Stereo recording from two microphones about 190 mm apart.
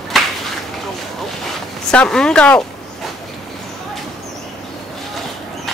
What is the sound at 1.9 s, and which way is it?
Speech, 5° left (ahead or behind).